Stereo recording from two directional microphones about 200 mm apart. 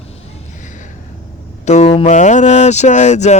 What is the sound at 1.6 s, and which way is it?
Speech, 35° left (ahead or behind).